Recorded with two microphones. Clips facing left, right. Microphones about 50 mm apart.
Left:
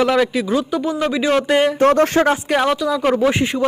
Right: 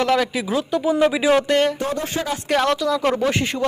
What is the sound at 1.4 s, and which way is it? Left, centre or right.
Speech, centre.